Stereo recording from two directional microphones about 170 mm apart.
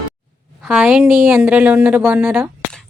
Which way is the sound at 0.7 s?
5° right (ahead or behind).